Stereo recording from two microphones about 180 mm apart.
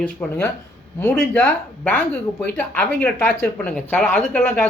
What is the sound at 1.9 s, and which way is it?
Speech, 10° left (ahead or behind).